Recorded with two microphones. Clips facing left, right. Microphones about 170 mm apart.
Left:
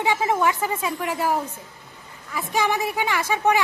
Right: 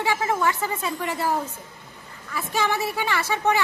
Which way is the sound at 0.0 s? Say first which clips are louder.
Left 2 dB; 20° left (ahead or behind).